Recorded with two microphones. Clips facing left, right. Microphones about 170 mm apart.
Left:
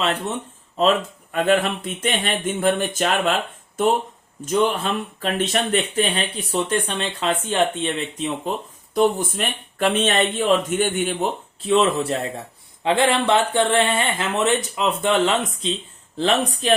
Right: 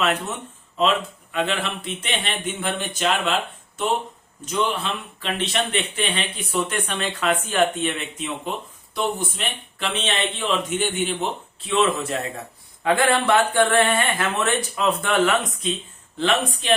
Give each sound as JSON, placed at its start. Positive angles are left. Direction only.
{"t": 0.8, "sound": "speech", "side_deg": 45}
{"t": 9.0, "sound": "speech", "side_deg": 50}
{"t": 12.8, "sound": "speech", "side_deg": 25}